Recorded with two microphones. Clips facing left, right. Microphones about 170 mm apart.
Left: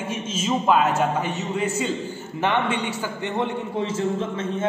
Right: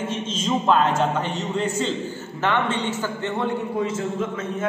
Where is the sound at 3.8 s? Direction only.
30° left (ahead or behind).